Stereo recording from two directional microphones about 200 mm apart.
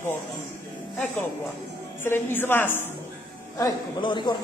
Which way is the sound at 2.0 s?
10° left (ahead or behind).